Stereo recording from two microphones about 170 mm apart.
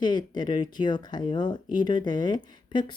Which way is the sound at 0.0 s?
25° left (ahead or behind).